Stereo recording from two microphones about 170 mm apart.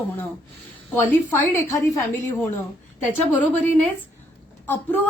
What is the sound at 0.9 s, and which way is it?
A woman's voice, 10° left (ahead or behind).